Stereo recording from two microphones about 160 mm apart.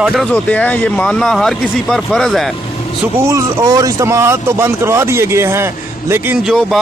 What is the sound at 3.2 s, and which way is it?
Speech, 20° right (ahead or behind).